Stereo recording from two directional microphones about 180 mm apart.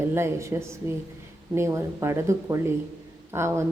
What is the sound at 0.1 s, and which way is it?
Speech, 15° right (ahead or behind).